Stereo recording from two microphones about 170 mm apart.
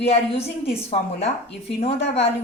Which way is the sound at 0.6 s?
35° left (ahead or behind).